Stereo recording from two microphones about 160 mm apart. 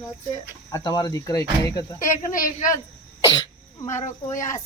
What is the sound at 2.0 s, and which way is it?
Speech, 55° left (ahead or behind).